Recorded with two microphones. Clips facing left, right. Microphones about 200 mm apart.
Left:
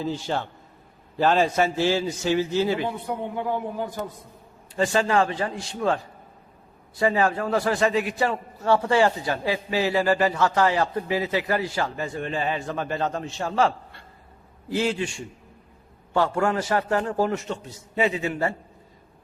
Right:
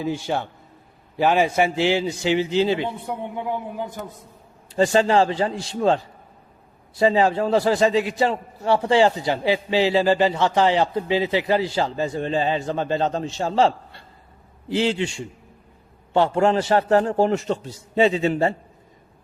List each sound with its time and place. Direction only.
0.0 s a man's voice: 15° right (ahead or behind)
4.8 s a man's voice: 30° right (ahead or behind)
7.0 s a man's voice: 25° right (ahead or behind)